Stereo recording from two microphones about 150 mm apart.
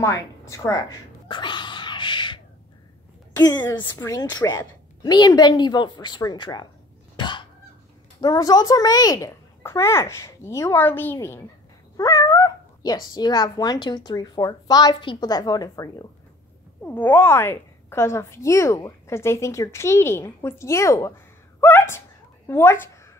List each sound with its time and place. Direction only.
0.0 s a sound: 20° left (ahead or behind)
3.6 s speech: 20° left (ahead or behind)
7.2 s fowl: 30° left (ahead or behind)
8.2 s speech: 25° left (ahead or behind)
16.8 s a woman's voice: 10° left (ahead or behind)
21.5 s gasp: 15° left (ahead or behind)
22.5 s a woman's voice: 15° left (ahead or behind)